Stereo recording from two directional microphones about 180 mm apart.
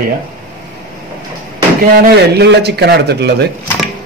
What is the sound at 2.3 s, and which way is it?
A man's voice, 65° right (ahead or behind).